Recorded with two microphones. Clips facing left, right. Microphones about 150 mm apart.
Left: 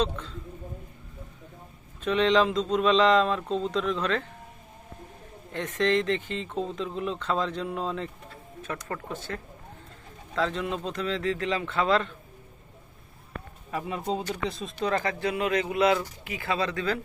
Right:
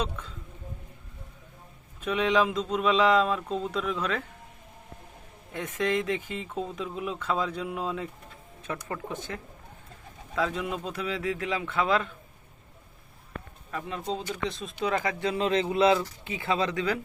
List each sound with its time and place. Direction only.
2.0 s speech: 10° right (ahead or behind)
5.5 s speech: 10° right (ahead or behind)
13.7 s speech: 10° left (ahead or behind)
14.9 s speech: 20° right (ahead or behind)